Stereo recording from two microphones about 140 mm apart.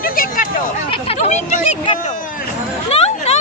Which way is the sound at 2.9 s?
45° left (ahead or behind).